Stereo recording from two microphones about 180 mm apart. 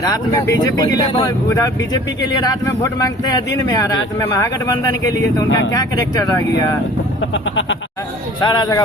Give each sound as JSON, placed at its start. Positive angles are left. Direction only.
{"t": 0.0, "sound": "speech", "side_deg": 20}
{"t": 8.4, "sound": "speech", "side_deg": 25}